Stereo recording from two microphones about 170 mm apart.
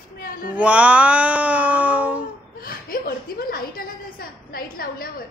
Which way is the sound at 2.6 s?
60° left (ahead or behind).